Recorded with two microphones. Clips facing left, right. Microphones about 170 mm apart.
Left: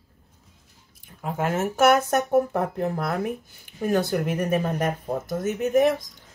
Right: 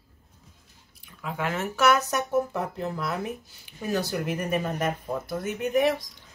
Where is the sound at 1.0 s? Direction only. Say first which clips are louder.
Left 4 dB; 45° left (ahead or behind).